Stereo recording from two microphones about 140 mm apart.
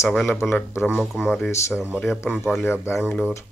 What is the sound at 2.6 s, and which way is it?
Speech, 20° left (ahead or behind).